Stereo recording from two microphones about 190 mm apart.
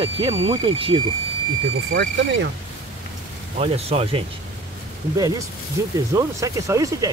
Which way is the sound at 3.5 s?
30° right (ahead or behind).